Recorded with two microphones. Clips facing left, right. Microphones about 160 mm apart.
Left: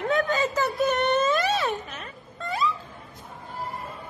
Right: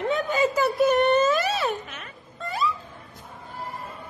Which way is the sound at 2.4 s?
Centre (ahead or behind).